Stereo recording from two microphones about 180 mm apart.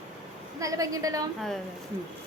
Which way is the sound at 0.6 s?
20° right (ahead or behind).